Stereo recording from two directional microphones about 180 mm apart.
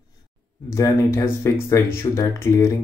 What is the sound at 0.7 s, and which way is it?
Speech, 15° left (ahead or behind).